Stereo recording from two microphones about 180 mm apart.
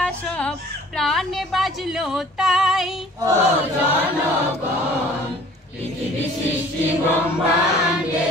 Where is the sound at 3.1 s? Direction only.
20° right (ahead or behind).